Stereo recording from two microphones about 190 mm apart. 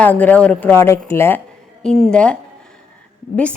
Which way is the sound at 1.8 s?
Centre (ahead or behind).